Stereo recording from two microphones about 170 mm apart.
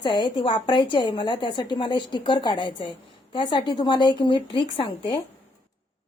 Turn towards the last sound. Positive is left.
turn(degrees=30)  # may be behind; listen again after turning